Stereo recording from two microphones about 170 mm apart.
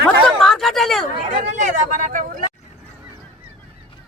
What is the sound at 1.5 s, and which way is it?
Speech, 45° right (ahead or behind).